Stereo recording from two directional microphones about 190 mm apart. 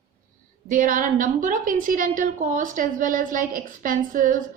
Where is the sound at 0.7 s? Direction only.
45° right (ahead or behind).